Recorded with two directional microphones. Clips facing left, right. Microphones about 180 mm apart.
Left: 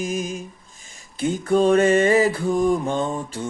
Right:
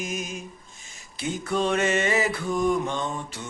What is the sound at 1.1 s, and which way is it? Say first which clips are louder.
Mantra: left 8 dB; 45° left (ahead or behind).